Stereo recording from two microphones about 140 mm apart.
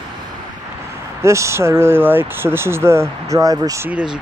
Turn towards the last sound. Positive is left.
turn(degrees=-25)  # may be behind; listen again after turning